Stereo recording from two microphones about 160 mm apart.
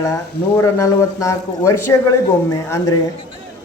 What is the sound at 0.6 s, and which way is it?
A woman's voice, 20° left (ahead or behind).